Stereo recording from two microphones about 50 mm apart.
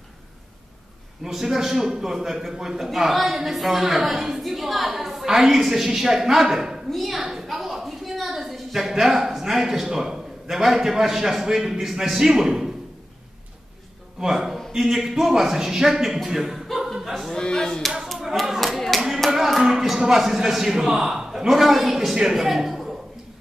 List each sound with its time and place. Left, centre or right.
1.2 s a man's voice: centre
6.9 s a woman's voice: centre
7.2 s a sound: centre
14.2 s a sound: centre
14.7 s a man's voice: centre
16.2 s chuckle: centre
17.3 s speech: centre
18.0 s a sound: centre
19.3 s a man's voice: centre